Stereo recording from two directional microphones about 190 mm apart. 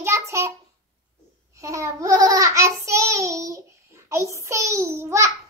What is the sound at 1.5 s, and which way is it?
Child singing, 15° right (ahead or behind).